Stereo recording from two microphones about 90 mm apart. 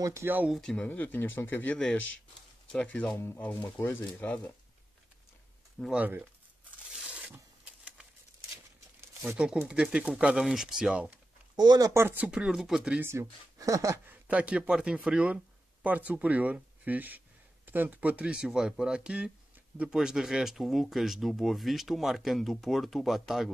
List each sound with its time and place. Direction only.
0.0 s speech: 30° right (ahead or behind)
0.5 s speech: 5° left (ahead or behind)
0.8 s speech: 20° left (ahead or behind)
3.2 s speech: 25° left (ahead or behind)
5.9 s speech: 20° right (ahead or behind)
7.6 s a sound: 15° right (ahead or behind)
9.7 s speech: 10° right (ahead or behind)
11.5 s speech: 50° right (ahead or behind)
11.9 s speech: 25° right (ahead or behind)
12.3 s speech: 5° right (ahead or behind)
13.0 s speech: 30° right (ahead or behind)
14.2 s speech: 15° right (ahead or behind)